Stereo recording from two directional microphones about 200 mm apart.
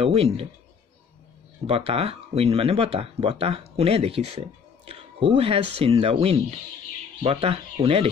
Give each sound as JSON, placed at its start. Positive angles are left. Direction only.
{"t": 0.0, "sound": "speech", "side_deg": -30}
{"t": 1.7, "sound": "speech", "side_deg": -30}